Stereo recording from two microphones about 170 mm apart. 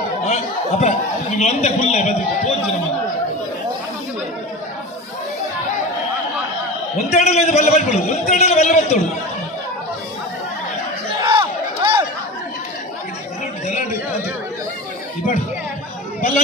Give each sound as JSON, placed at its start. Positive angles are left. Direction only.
{"t": 0.3, "sound": "chatter", "side_deg": 45}
{"t": 1.4, "sound": "a man's voice", "side_deg": 40}
{"t": 7.1, "sound": "a man's voice", "side_deg": 40}
{"t": 11.2, "sound": "crowd", "side_deg": -25}